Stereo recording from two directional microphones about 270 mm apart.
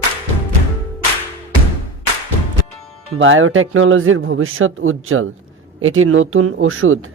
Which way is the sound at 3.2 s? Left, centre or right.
Right.